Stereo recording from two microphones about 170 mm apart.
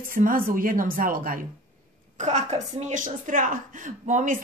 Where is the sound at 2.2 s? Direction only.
45° right (ahead or behind).